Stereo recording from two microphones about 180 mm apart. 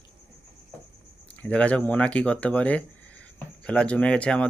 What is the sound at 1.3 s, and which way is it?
Speech, 10° left (ahead or behind).